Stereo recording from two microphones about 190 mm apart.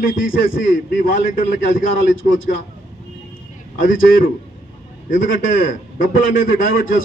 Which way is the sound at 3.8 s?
45° left (ahead or behind).